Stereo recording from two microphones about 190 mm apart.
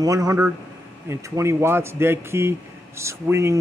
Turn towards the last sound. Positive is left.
turn(degrees=-15)  # may be behind; listen again after turning